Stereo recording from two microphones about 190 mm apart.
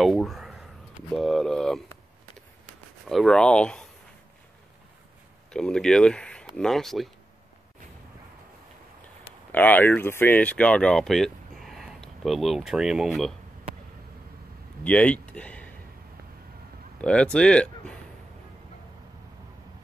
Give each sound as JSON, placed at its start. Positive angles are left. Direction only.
{"t": 0.0, "sound": "a sound", "side_deg": 0}
{"t": 3.1, "sound": "speech", "side_deg": 0}
{"t": 5.5, "sound": "speech", "side_deg": 5}
{"t": 9.5, "sound": "speech", "side_deg": 10}
{"t": 14.8, "sound": "speech", "side_deg": 5}
{"t": 17.0, "sound": "speech", "side_deg": 5}